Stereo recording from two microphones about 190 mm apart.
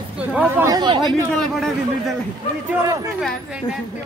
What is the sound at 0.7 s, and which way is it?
Chatter, 25° right (ahead or behind).